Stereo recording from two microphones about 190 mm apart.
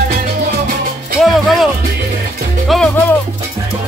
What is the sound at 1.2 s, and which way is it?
Music, centre (ahead or behind).